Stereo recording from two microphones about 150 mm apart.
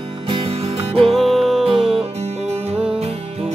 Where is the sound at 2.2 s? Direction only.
45° right (ahead or behind).